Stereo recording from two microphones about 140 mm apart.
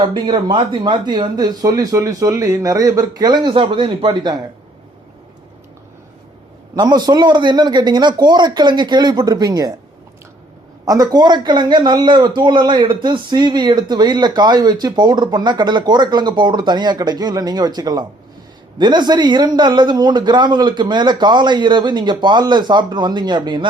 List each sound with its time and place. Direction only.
0.0 s speech: 35° right (ahead or behind)
6.7 s speech: 30° right (ahead or behind)
10.8 s speech: 25° right (ahead or behind)